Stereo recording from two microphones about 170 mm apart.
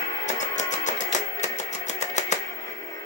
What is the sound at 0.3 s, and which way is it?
Music, 45° left (ahead or behind).